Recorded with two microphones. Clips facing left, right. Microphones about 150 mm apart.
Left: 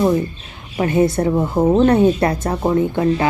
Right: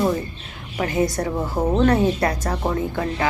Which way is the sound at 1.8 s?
25° left (ahead or behind).